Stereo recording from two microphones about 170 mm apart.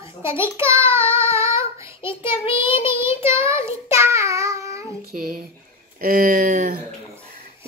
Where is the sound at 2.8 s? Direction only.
15° right (ahead or behind).